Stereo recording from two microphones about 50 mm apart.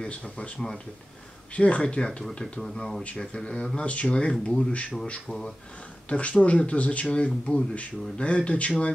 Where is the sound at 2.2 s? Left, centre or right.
Centre.